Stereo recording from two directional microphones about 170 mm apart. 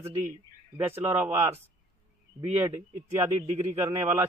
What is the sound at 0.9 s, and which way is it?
Speech, 10° right (ahead or behind).